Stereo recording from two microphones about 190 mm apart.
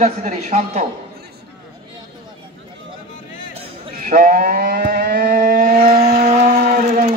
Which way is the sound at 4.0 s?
45° right (ahead or behind).